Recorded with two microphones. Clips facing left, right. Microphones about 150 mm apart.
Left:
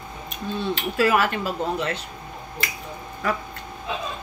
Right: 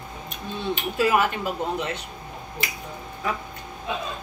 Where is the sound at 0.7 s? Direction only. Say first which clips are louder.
Left 1 dB; 20° right (ahead or behind).